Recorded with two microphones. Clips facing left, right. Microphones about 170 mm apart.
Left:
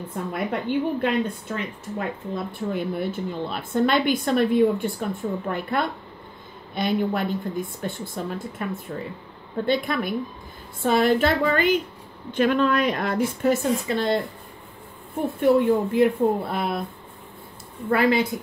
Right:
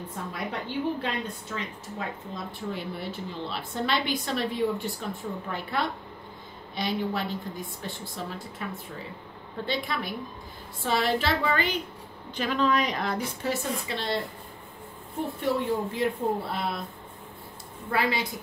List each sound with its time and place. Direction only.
0.1 s a woman's voice: 55° left (ahead or behind)
15.4 s speech: 55° left (ahead or behind)
17.8 s a woman's voice: 55° left (ahead or behind)